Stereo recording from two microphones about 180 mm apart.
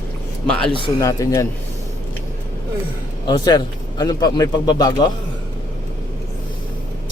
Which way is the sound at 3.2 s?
20° left (ahead or behind).